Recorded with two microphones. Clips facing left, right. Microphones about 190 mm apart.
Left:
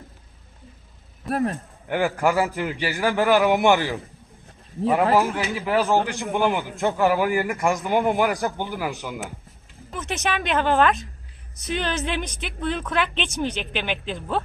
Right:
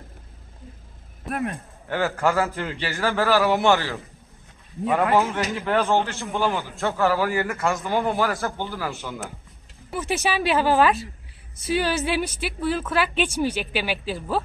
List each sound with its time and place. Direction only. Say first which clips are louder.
1.3 s speech: left 4 dB; 35° left (ahead or behind)
1.9 s a man's voice: left 1 dB; 15° left (ahead or behind)
5.1 s a woman's voice: left 1 dB; centre (ahead or behind)
6.0 s a man's voice: left 3 dB; 15° left (ahead or behind)
9.8 s a woman's voice: right 2 dB; 10° right (ahead or behind)